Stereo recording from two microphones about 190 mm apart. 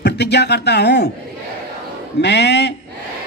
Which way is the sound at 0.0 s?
60° left (ahead or behind).